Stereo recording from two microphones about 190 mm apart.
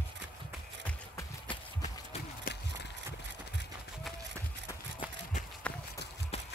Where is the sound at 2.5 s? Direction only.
50° left (ahead or behind).